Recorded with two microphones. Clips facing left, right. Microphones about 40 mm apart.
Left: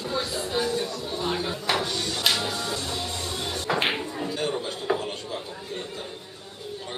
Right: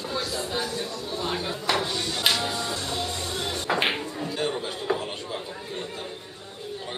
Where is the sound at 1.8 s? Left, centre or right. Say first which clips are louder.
Even; centre.